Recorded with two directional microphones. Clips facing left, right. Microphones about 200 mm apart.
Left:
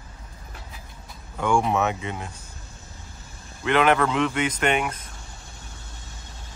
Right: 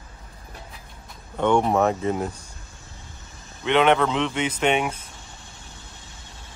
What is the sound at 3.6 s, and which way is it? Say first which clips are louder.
A man's voice: right 1 dB; centre (ahead or behind).